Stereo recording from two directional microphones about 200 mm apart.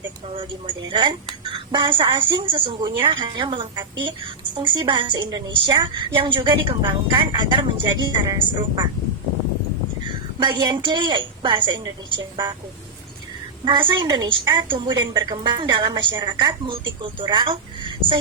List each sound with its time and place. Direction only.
0.9 s speech: 25° right (ahead or behind)
10.4 s speech: 25° right (ahead or behind)
13.7 s speech: 25° right (ahead or behind)